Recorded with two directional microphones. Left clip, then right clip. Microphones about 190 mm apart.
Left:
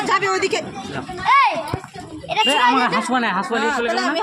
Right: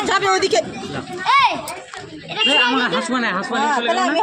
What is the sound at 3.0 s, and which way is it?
Speech, 40° left (ahead or behind).